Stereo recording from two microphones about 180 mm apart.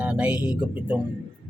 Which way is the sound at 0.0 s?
5° right (ahead or behind).